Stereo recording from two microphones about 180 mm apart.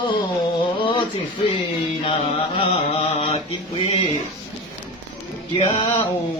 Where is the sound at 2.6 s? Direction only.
30° left (ahead or behind).